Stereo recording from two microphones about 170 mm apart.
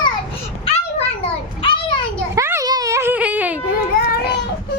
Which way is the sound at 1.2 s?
30° left (ahead or behind).